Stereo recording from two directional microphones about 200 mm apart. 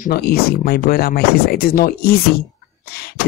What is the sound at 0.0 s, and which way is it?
Speech, 50° left (ahead or behind).